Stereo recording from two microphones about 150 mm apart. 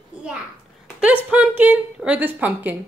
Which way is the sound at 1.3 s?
10° right (ahead or behind).